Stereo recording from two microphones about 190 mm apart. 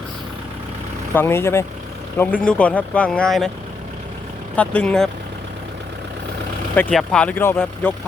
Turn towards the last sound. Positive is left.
turn(degrees=10)  # may be behind; listen again after turning